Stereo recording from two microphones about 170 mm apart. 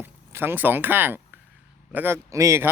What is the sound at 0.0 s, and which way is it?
Speech, 10° right (ahead or behind).